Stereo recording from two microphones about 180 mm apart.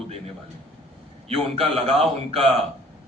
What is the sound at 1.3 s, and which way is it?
A man's voice, 35° right (ahead or behind).